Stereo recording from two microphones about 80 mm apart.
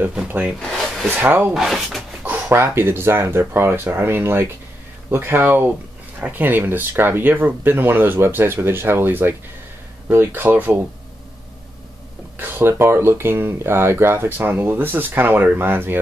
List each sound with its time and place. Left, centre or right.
0.0 s speech: centre
0.6 s a sound: centre
1.1 s speech: right
1.5 s speech: centre
2.5 s speech: right
12.4 s speech: right